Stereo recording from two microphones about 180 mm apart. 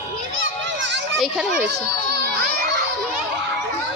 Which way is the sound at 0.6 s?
85° right.